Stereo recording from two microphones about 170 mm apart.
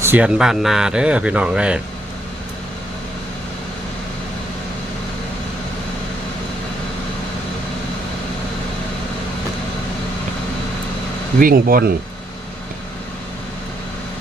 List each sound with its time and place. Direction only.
0.0 s speech: 10° right (ahead or behind)
11.3 s speech: 55° right (ahead or behind)